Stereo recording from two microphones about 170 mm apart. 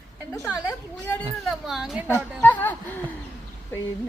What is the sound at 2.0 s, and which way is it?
Speech, 10° left (ahead or behind).